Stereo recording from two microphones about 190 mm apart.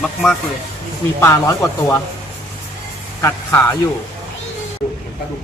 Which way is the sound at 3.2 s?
15° left (ahead or behind).